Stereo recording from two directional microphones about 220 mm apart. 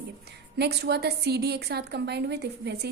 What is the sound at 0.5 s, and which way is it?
Speech, 50° right (ahead or behind).